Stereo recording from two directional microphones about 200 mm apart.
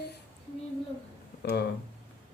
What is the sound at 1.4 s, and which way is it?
Speech, 55° left (ahead or behind).